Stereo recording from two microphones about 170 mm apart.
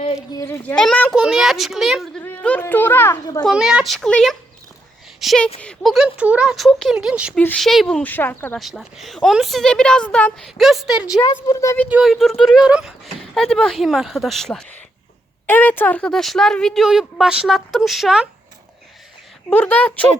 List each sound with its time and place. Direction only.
0.3 s speech: 15° left (ahead or behind)
1.1 s speech: 5° right (ahead or behind); by 3.4 s 15° left (ahead or behind)
3.4 s speech: 5° right (ahead or behind)
7.3 s speech: 5° left (ahead or behind)
8.5 s speech: centre (ahead or behind)
11.4 s speech: 20° left (ahead or behind)
11.9 s speech: 5° right (ahead or behind)
19.5 s speech: 5° left (ahead or behind)